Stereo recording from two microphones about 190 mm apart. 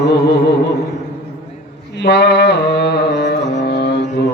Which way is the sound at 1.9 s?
65° left (ahead or behind).